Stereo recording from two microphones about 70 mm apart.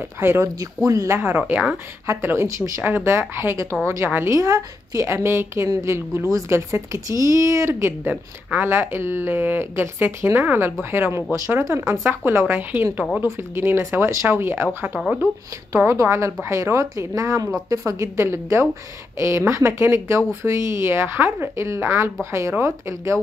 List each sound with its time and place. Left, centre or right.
0.0 s speech: right
0.8 s speech: right
1.1 s speech: right
2.4 s speech: right
2.8 s speech: right
4.4 s speech: right
8.0 s speech: right
8.6 s speech: right
15.9 s speech: right